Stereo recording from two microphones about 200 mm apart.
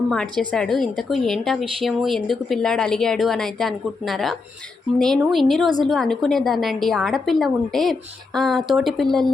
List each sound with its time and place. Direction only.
0.1 s a woman's voice: 5° left (ahead or behind)